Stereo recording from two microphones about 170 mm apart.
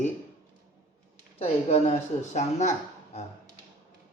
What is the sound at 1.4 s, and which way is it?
Speech, 35° left (ahead or behind).